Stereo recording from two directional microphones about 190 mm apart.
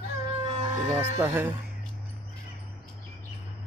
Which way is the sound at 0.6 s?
35° right (ahead or behind).